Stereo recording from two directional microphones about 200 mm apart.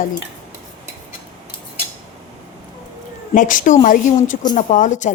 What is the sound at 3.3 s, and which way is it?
Speech, 40° left (ahead or behind).